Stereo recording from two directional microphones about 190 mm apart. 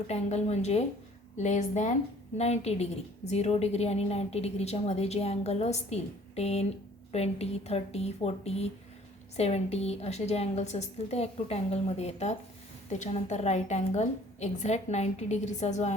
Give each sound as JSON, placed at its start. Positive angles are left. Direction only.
{"t": 0.1, "sound": "a woman's voice", "side_deg": 35}